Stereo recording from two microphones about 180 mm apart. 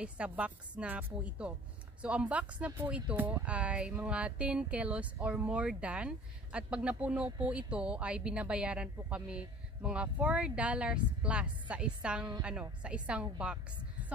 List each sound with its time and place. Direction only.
0.0 s a woman's voice: 5° right (ahead or behind)